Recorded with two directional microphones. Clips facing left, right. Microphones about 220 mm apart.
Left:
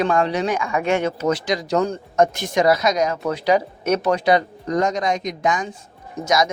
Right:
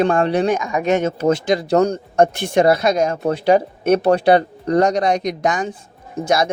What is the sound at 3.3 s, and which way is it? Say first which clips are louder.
Speech: right 4 dB; 50° right (ahead or behind).